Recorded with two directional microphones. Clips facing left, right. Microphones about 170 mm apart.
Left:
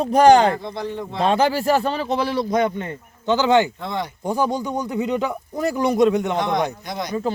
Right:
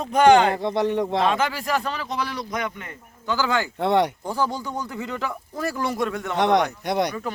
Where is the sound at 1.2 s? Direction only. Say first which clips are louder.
Left 5 dB; 35° left (ahead or behind).